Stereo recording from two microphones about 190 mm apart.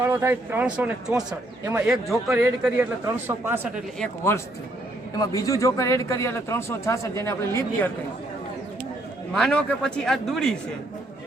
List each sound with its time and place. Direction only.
0.0 s a man's voice: 15° right (ahead or behind)
2.3 s speech: 10° right (ahead or behind)
4.0 s speech: 10° left (ahead or behind)
9.3 s a man's voice: 5° left (ahead or behind)